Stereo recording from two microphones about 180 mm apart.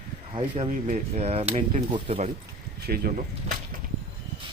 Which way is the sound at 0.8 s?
40° right (ahead or behind).